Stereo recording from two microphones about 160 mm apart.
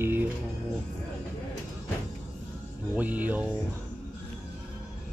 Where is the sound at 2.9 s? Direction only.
10° right (ahead or behind).